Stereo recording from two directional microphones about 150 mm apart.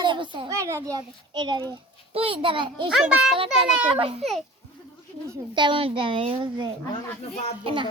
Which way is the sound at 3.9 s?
40° right (ahead or behind).